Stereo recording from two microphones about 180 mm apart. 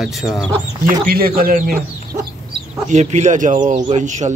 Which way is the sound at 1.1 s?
55° right (ahead or behind).